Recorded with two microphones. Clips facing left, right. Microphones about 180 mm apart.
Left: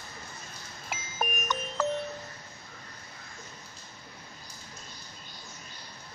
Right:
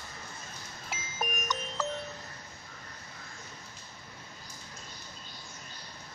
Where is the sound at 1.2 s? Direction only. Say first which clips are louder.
Left 2 dB; 55° left (ahead or behind).